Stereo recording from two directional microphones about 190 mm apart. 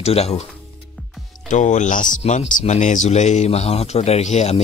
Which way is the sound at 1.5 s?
40° left (ahead or behind).